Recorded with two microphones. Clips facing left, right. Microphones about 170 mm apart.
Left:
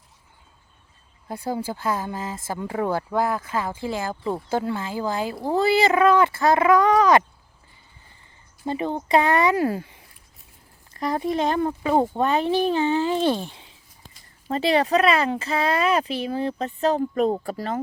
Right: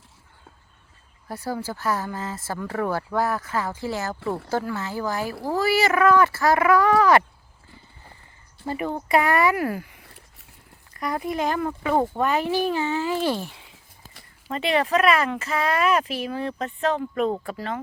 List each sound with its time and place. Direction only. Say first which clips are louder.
1.3 s speech: left 2 dB; 20° left (ahead or behind)
8.6 s speech: left 2 dB; 20° left (ahead or behind); by 17.7 s 40° left (ahead or behind)